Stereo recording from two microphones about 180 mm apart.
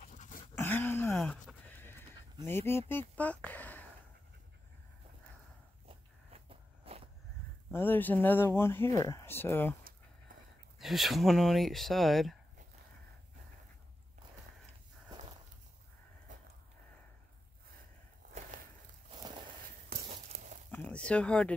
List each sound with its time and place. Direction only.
0.0 s dog: 45° left (ahead or behind)
0.6 s a sound: 10° left (ahead or behind)
1.1 s horse: 5° left (ahead or behind)
2.4 s speech: 15° left (ahead or behind)
5.9 s walk: 35° right (ahead or behind)
7.7 s speech: 10° left (ahead or behind)
10.8 s speech: centre (ahead or behind)
19.1 s walk: 25° right (ahead or behind)
20.1 s a sound: 40° right (ahead or behind)
20.7 s a sound: 5° left (ahead or behind)